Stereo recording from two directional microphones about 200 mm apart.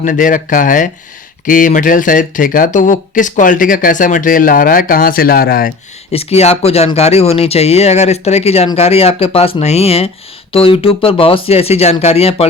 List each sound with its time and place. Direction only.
0.0 s speech: 40° left (ahead or behind)
6.1 s speech: 30° left (ahead or behind)